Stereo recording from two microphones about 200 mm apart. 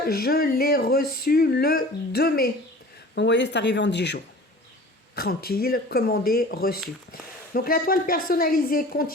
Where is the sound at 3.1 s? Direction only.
60° left (ahead or behind).